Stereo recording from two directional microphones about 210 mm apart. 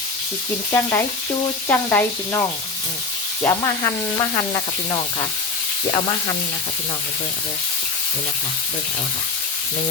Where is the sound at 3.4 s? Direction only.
15° left (ahead or behind).